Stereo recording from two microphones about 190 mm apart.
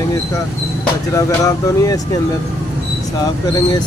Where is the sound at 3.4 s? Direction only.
20° left (ahead or behind).